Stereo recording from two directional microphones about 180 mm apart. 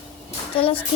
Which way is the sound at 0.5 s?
30° left (ahead or behind).